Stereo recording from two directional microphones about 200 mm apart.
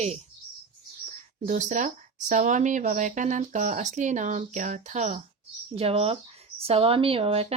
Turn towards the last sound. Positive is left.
turn(degrees=-30)  # may be behind; listen again after turning